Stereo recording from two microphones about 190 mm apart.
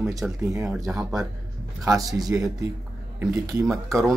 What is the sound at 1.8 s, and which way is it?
Speech, 15° right (ahead or behind).